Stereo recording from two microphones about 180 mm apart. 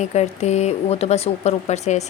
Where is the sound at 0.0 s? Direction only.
40° left (ahead or behind).